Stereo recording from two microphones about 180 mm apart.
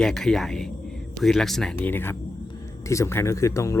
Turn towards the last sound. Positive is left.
turn(degrees=15)  # may be behind; listen again after turning